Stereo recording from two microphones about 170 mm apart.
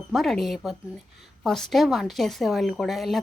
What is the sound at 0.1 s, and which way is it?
Speech, centre (ahead or behind).